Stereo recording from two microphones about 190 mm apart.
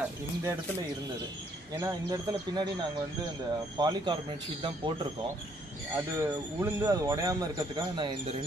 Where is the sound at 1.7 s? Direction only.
20° right (ahead or behind).